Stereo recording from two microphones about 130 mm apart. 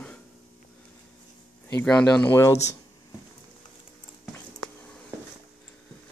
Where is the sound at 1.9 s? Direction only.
10° left (ahead or behind).